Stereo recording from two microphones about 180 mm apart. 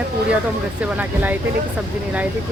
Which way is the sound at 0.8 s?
10° right (ahead or behind).